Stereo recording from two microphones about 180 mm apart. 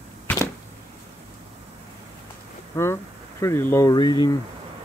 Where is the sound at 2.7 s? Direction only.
15° left (ahead or behind).